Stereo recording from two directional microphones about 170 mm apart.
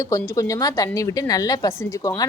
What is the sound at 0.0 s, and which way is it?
A woman's voice, 20° left (ahead or behind).